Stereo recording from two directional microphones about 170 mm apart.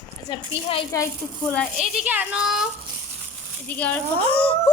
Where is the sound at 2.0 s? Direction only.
10° right (ahead or behind).